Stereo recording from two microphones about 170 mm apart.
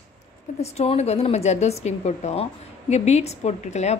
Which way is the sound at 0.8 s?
40° left (ahead or behind).